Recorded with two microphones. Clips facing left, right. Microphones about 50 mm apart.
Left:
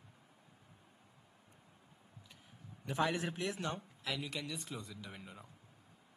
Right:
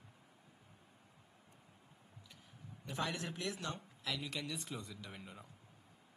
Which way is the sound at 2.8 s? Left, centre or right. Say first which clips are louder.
Left 5 dB; centre.